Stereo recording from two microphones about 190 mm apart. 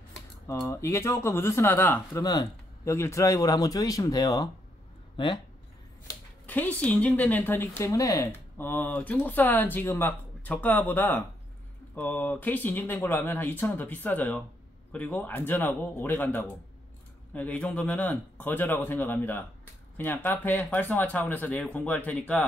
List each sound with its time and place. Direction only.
0.5 s a woman's voice: 15° left (ahead or behind)
6.4 s a woman's voice: 10° left (ahead or behind)